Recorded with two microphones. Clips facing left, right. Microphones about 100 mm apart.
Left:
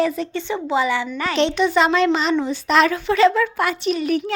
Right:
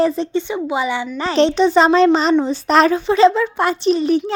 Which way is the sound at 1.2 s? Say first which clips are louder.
Right 6 dB; 35° right (ahead or behind).